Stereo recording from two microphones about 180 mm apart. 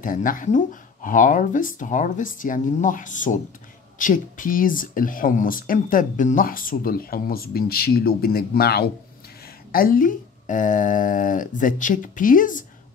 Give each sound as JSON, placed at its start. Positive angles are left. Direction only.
{"t": 0.0, "sound": "speech", "side_deg": 50}